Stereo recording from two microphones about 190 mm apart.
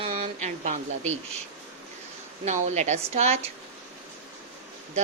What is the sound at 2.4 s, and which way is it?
Speech, 40° right (ahead or behind).